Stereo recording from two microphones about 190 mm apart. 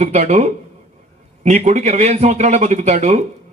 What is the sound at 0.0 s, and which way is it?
Speech, 35° right (ahead or behind).